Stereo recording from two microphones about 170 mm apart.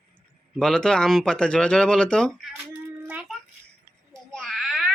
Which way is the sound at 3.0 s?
10° right (ahead or behind).